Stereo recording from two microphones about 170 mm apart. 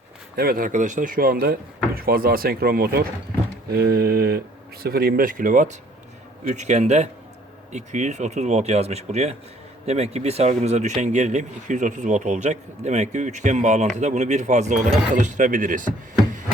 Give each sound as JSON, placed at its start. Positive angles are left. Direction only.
{"t": 0.3, "sound": "speech", "side_deg": -60}